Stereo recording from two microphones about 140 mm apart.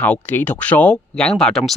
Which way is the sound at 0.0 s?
10° left (ahead or behind).